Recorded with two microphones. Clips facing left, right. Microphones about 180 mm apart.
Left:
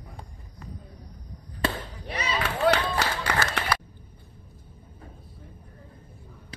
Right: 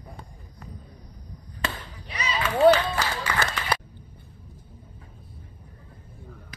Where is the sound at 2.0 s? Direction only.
55° left (ahead or behind).